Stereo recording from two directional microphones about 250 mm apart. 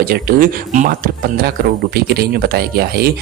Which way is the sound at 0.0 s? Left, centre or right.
Right.